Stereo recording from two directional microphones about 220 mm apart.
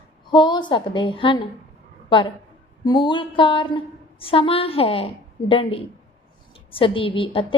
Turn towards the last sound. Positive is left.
turn(degrees=25)  # may be behind; listen again after turning